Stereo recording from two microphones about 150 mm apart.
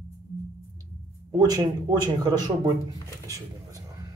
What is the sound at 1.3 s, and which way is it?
Speech, 25° right (ahead or behind).